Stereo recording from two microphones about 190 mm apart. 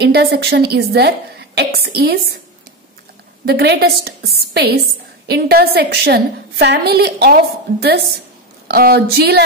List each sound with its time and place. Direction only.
0.0 s a woman's voice: 60° right (ahead or behind)
3.4 s a woman's voice: 60° right (ahead or behind)